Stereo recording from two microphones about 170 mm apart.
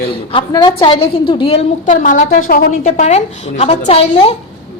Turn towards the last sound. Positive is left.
turn(degrees=35)  # may be behind; listen again after turning